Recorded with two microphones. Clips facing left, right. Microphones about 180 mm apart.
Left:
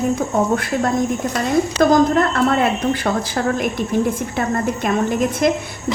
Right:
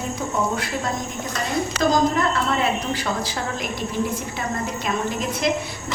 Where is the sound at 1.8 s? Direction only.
55° left (ahead or behind).